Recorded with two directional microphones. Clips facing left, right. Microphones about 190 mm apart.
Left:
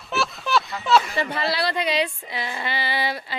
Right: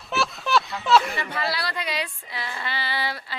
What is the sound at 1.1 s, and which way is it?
A woman's voice, 30° left (ahead or behind).